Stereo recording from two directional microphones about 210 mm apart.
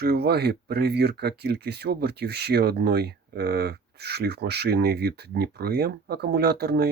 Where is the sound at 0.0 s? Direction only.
50° right (ahead or behind).